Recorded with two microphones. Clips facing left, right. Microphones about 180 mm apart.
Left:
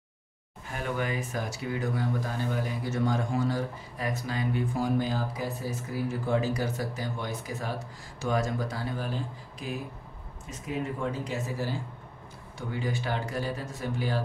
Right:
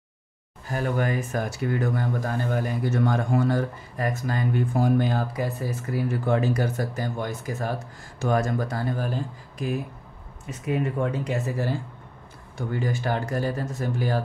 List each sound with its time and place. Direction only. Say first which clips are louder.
0.7 s speech: right 6 dB; 45° right (ahead or behind)
10.7 s speech: right 6 dB; 60° right (ahead or behind)
12.5 s speech: right 4 dB; 45° right (ahead or behind)